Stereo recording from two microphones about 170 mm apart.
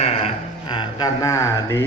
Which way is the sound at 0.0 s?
40° left (ahead or behind).